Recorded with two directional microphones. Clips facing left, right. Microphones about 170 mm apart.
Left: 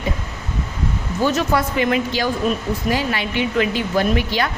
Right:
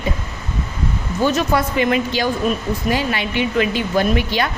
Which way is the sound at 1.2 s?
20° right (ahead or behind).